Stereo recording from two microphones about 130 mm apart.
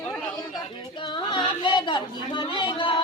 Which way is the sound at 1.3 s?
40° left (ahead or behind).